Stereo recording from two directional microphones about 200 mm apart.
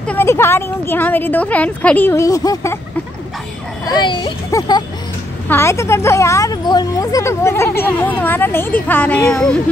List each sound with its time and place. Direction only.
0.1 s speech: 10° left (ahead or behind)
3.9 s speech: 20° left (ahead or behind); by 9.6 s 5° left (ahead or behind)